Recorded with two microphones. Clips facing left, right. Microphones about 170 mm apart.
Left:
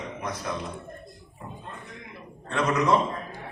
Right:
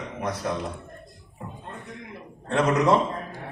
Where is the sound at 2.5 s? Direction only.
40° right (ahead or behind).